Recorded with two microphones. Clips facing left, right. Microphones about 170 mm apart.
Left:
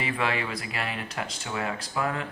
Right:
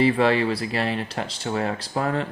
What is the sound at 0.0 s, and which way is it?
Speech, 35° right (ahead or behind).